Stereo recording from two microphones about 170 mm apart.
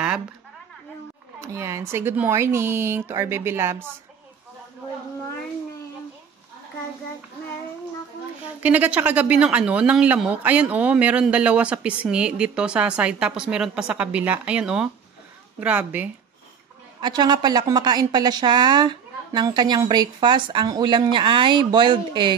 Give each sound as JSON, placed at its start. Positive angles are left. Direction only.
{"t": 1.4, "sound": "speech", "side_deg": -15}
{"t": 8.6, "sound": "speech", "side_deg": -10}
{"t": 17.0, "sound": "a woman's voice", "side_deg": -25}